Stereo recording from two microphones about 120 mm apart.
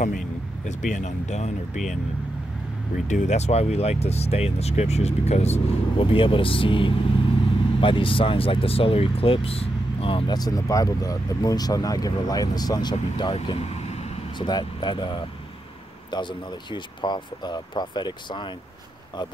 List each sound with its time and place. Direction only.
0.7 s speech: 85° left
3.1 s speech: 80° left; by 10.3 s 50° left (ahead or behind)
10.3 s speech: 30° left (ahead or behind)
13.2 s speech: 50° left (ahead or behind)
14.4 s speech: 40° left (ahead or behind)